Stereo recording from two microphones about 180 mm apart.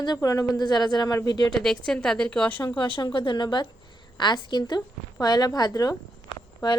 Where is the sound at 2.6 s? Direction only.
25° left (ahead or behind).